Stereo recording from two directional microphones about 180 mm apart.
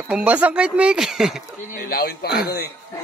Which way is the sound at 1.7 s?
60° left (ahead or behind).